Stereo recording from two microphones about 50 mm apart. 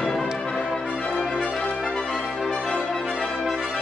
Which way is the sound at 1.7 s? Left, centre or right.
Centre.